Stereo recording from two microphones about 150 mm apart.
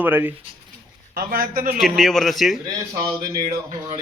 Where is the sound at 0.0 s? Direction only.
10° right (ahead or behind).